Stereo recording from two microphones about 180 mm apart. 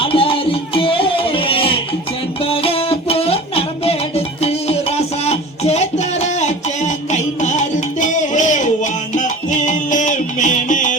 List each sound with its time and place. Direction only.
0.0 s music: 30° left (ahead or behind); by 10.9 s 45° left (ahead or behind)